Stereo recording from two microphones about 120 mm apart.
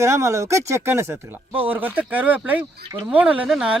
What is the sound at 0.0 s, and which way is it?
Speech, 25° right (ahead or behind).